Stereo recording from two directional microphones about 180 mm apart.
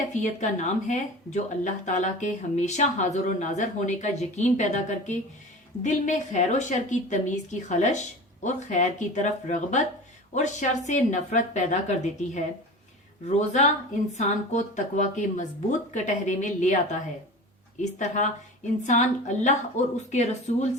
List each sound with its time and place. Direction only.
0.1 s speech: 40° left (ahead or behind)